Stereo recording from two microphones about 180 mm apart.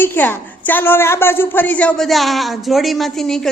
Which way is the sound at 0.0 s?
10° left (ahead or behind).